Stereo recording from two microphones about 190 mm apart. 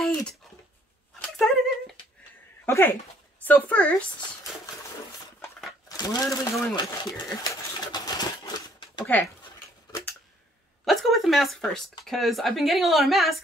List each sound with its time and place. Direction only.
0.0 s dog: 5° left (ahead or behind)
1.2 s a sound: centre (ahead or behind)
2.6 s speech: 10° left (ahead or behind)
5.9 s speech: 20° left (ahead or behind)
6.7 s sewing machine: 20° left (ahead or behind)
9.0 s speech: 10° left (ahead or behind)
10.9 s a woman's voice: centre (ahead or behind)